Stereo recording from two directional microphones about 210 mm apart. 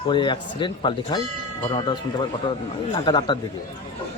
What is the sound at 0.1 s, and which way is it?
Speech, 20° left (ahead or behind).